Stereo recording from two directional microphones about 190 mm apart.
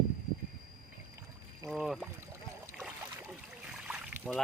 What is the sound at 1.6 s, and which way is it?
Pour, 5° right (ahead or behind).